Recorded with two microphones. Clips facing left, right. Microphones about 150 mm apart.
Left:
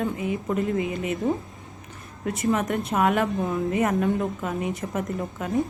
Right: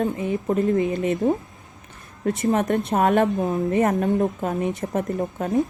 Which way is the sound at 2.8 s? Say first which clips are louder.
Right 2 dB; 35° right (ahead or behind).